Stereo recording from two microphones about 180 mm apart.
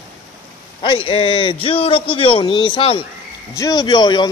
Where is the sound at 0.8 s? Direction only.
30° left (ahead or behind).